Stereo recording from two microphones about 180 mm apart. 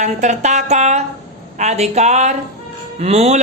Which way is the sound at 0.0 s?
40° right (ahead or behind).